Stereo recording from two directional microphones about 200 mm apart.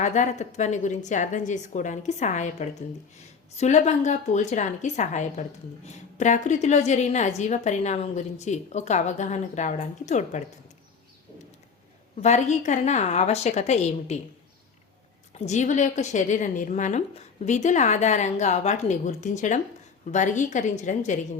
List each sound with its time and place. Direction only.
0.0 s a woman's voice: 35° left (ahead or behind)
12.2 s a woman's voice: 35° left (ahead or behind)
15.3 s a woman's voice: 35° left (ahead or behind)